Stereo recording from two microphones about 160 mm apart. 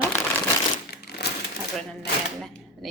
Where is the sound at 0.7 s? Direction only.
80° left.